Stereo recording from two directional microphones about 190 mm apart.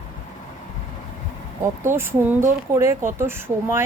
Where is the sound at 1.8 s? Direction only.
10° right (ahead or behind).